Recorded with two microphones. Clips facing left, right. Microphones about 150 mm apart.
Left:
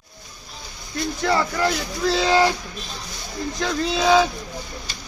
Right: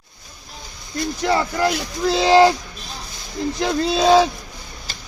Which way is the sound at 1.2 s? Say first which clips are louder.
Right 2 dB; 15° right (ahead or behind).